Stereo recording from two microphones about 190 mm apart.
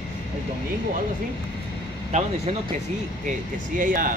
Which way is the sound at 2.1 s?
35° right (ahead or behind).